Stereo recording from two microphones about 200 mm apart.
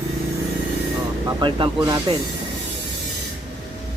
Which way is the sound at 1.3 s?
20° right (ahead or behind).